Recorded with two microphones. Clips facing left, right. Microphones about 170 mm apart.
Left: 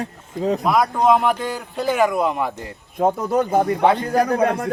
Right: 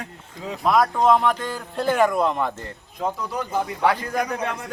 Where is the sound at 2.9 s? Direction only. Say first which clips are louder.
Left 9 dB; 50° left (ahead or behind).